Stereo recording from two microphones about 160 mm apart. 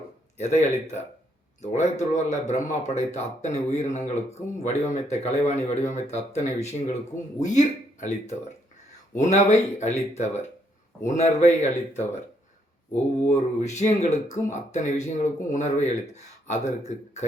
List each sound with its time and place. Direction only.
0.3 s speech: 45° left (ahead or behind)
13.3 s speech: 45° left (ahead or behind)